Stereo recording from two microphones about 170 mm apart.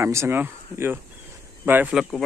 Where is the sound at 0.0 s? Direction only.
15° right (ahead or behind).